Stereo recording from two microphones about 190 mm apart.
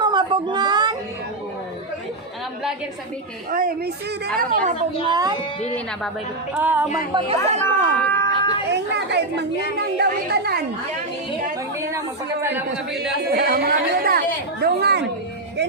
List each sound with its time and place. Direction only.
0.0 s a sound: 25° right (ahead or behind)
3.5 s a woman's voice: 50° right (ahead or behind)
5.0 s a woman's voice: 20° right (ahead or behind)
5.4 s a woman's voice: 35° left (ahead or behind)
6.5 s a woman's voice: 10° right (ahead or behind)
7.1 s speech: 30° right (ahead or behind)
7.9 s a sound: 10° left (ahead or behind)
8.7 s speech: 65° right (ahead or behind)
11.9 s a woman's voice: 15° right (ahead or behind)
13.3 s a woman's voice: 55° right (ahead or behind)